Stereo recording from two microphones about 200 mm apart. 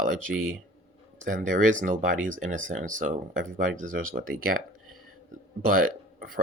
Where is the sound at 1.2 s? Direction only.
40° right (ahead or behind).